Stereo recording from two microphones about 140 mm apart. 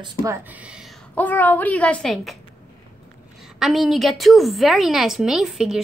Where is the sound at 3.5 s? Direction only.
Centre (ahead or behind).